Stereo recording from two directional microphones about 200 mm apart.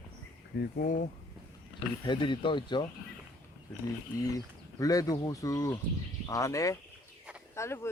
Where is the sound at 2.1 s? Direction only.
25° left (ahead or behind).